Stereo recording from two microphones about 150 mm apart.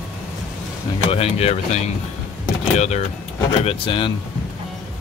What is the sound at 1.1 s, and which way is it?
Speech, 40° left (ahead or behind).